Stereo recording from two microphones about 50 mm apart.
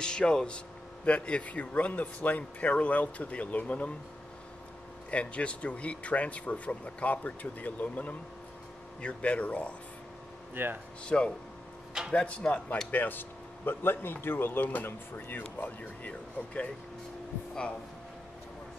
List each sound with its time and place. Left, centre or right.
0.0 s speech: centre
5.1 s speech: left
10.5 s speech: right
11.1 s speech: centre
12.9 s a man's voice: left